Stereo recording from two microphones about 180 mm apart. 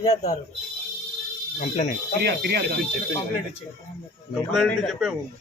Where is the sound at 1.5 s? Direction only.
45° left (ahead or behind).